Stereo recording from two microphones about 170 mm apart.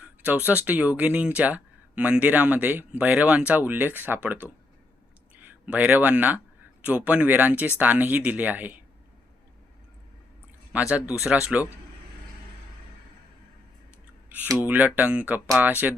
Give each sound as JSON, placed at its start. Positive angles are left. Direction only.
{"t": 0.0, "sound": "speech", "side_deg": -10}
{"t": 10.7, "sound": "speech", "side_deg": -5}
{"t": 14.3, "sound": "speech", "side_deg": -10}